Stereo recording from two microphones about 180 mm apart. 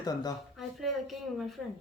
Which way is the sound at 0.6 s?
Centre (ahead or behind).